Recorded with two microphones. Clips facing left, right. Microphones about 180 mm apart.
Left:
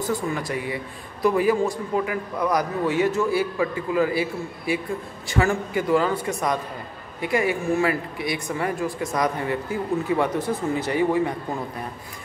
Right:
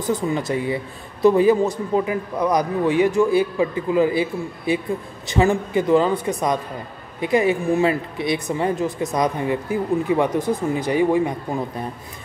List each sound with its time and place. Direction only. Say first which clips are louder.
0.1 s speech: right 7 dB; 20° right (ahead or behind)